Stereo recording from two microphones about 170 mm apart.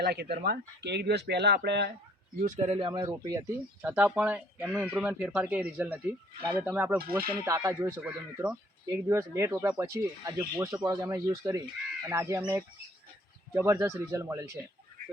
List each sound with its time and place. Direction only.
0.0 s speech: 70° right (ahead or behind)
2.4 s speech: 40° right (ahead or behind)
3.1 s speech: 20° right (ahead or behind)